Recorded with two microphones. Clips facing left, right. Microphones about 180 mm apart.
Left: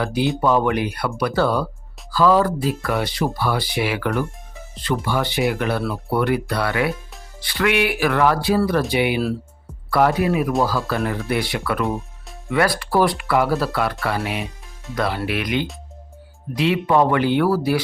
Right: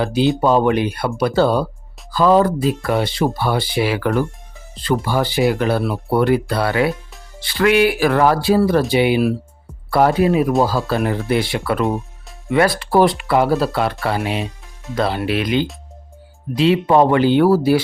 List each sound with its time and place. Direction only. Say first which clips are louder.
0.0 s speech: right 4 dB; 25° right (ahead or behind)